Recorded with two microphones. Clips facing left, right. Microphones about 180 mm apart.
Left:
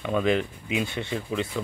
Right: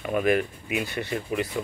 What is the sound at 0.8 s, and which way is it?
Speech, 20° left (ahead or behind).